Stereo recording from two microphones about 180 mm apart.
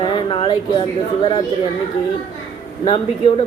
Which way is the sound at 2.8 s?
30° left (ahead or behind).